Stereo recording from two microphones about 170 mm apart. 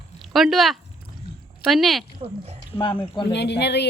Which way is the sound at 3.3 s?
80° left.